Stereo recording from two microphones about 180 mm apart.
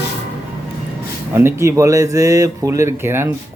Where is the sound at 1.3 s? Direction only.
15° right (ahead or behind).